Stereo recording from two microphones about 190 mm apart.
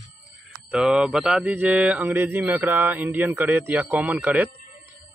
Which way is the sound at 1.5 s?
5° right (ahead or behind).